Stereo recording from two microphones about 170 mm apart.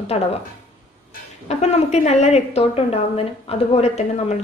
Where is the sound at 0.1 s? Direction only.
40° left (ahead or behind).